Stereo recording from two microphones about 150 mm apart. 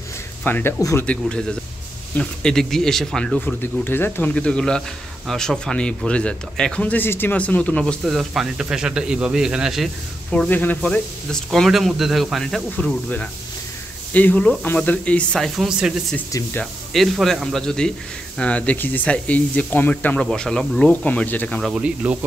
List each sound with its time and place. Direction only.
0.4 s speech: 15° left (ahead or behind)
1.0 s speech: 5° left (ahead or behind)
3.3 s speech: 15° left (ahead or behind); by 9.8 s 5° right (ahead or behind)
10.3 s speech: 10° left (ahead or behind)
21.7 s speech: 10° right (ahead or behind)